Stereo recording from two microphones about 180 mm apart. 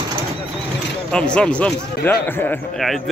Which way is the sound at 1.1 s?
5° left (ahead or behind).